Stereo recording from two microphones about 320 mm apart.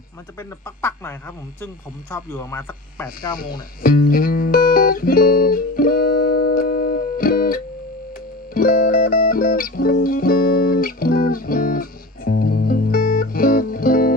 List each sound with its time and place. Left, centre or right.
0.3 s speech: centre
3.8 s music: left